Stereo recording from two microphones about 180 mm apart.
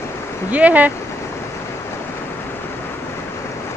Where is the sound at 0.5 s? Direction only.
10° right (ahead or behind).